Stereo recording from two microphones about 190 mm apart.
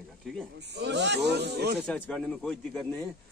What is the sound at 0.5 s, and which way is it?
Speech, 65° right (ahead or behind).